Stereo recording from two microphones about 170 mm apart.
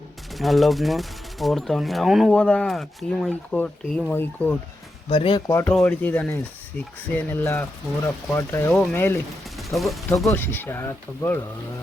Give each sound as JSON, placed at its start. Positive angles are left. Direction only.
{"t": 0.3, "sound": "speech", "side_deg": 0}
{"t": 5.0, "sound": "speech", "side_deg": 30}
{"t": 5.5, "sound": "speech", "side_deg": 15}
{"t": 10.3, "sound": "speech", "side_deg": 10}